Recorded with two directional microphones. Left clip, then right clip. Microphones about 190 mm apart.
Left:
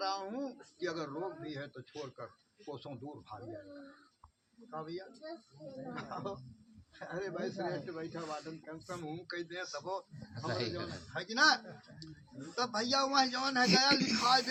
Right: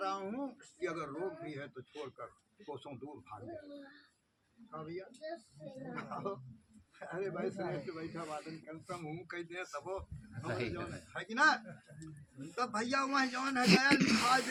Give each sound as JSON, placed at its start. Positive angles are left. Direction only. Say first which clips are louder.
{"t": 0.0, "sound": "a sound", "louder": "left 1 dB", "side_deg": -15}
{"t": 2.6, "sound": "speech", "louder": "left 1 dB", "side_deg": -15}
{"t": 4.7, "sound": "speech", "louder": "left 2 dB", "side_deg": -15}
{"t": 13.7, "sound": "speech", "louder": "right 3 dB", "side_deg": -25}